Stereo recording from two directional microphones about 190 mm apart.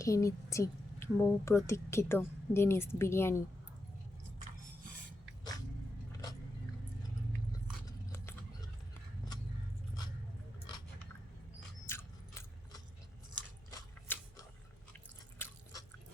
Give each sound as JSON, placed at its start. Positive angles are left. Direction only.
{"t": 0.0, "sound": "a woman's voice", "side_deg": 15}
{"t": 11.9, "sound": "a sound", "side_deg": 15}
{"t": 15.4, "sound": "chewing", "side_deg": 10}